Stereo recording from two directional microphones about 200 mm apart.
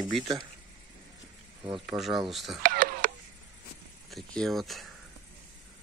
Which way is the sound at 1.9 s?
Centre (ahead or behind).